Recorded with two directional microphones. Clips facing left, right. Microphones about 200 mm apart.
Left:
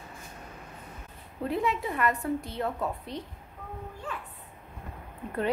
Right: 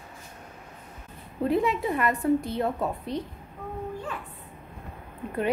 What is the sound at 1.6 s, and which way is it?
A woman's voice, 15° right (ahead or behind).